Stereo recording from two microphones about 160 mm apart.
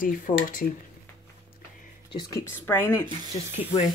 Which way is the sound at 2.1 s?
30° left (ahead or behind).